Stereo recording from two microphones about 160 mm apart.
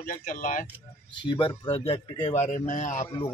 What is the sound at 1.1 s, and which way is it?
Speech, 30° left (ahead or behind).